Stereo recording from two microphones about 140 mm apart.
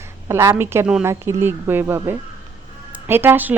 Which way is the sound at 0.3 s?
20° right (ahead or behind).